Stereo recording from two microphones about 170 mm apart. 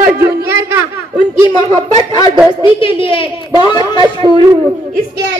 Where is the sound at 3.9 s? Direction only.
30° right (ahead or behind).